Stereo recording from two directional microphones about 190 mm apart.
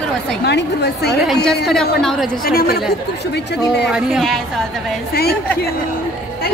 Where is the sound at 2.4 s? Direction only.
55° left (ahead or behind).